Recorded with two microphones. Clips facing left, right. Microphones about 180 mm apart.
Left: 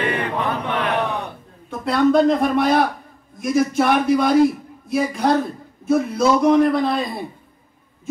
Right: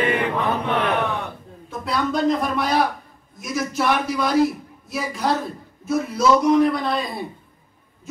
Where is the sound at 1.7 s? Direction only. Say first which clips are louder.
Left 7 dB; 55° left (ahead or behind).